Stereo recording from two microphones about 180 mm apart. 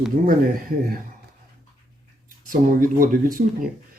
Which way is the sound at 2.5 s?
50° right (ahead or behind).